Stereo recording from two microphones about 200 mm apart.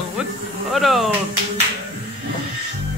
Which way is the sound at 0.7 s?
Centre (ahead or behind).